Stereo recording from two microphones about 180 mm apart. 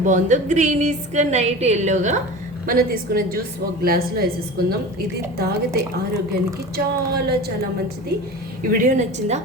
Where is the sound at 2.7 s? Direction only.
55° right (ahead or behind).